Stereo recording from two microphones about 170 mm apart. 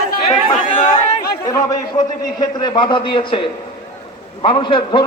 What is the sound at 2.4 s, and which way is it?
A man's voice, 25° left (ahead or behind).